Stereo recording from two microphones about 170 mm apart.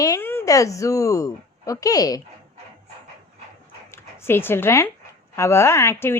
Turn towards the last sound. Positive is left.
turn(degrees=15)  # may be behind; listen again after turning